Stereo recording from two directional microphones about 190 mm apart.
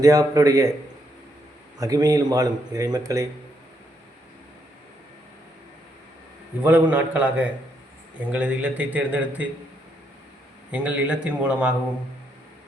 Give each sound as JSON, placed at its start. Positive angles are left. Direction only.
{"t": 0.0, "sound": "speech", "side_deg": -20}
{"t": 1.8, "sound": "speech", "side_deg": -20}
{"t": 6.6, "sound": "speech", "side_deg": -10}
{"t": 10.7, "sound": "speech", "side_deg": -5}